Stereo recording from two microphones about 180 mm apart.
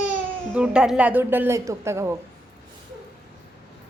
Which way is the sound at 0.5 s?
5° right (ahead or behind).